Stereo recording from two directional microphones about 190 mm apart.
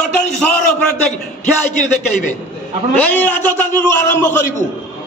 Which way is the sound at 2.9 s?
10° left (ahead or behind).